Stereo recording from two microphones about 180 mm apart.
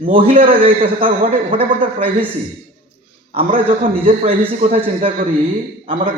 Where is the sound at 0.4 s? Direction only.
30° right (ahead or behind).